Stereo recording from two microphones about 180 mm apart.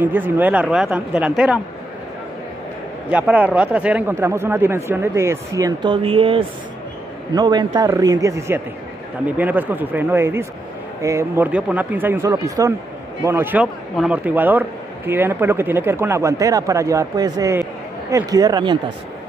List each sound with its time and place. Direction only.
0.0 s speech: 10° right (ahead or behind)
3.1 s a man's voice: 10° right (ahead or behind); by 18.8 s 25° right (ahead or behind)